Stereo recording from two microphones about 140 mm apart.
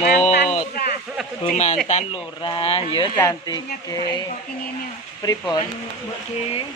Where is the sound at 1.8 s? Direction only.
50° left (ahead or behind).